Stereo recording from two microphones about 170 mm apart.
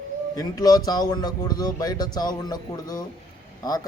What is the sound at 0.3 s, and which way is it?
A man's voice, 20° left (ahead or behind).